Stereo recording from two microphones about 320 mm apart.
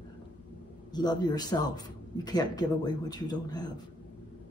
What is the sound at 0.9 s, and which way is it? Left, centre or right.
Speech, centre.